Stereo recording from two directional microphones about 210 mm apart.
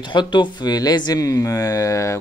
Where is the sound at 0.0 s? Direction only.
20° left (ahead or behind).